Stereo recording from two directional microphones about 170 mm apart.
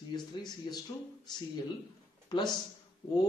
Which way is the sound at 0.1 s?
25° left (ahead or behind).